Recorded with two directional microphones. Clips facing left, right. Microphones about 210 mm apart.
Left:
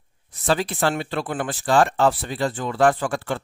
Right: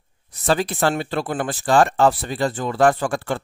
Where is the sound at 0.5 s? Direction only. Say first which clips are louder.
Right 2 dB; 45° right (ahead or behind).